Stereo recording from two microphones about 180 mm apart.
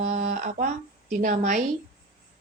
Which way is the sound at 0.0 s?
45° right (ahead or behind).